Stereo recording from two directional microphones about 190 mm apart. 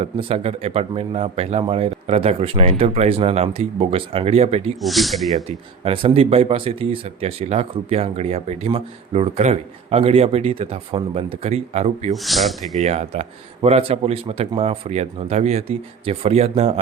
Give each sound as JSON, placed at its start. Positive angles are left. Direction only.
{"t": 0.0, "sound": "speech", "side_deg": -30}
{"t": 4.8, "sound": "speech", "side_deg": 0}
{"t": 5.5, "sound": "speech", "side_deg": -30}
{"t": 12.1, "sound": "speech", "side_deg": 0}
{"t": 12.7, "sound": "speech", "side_deg": -35}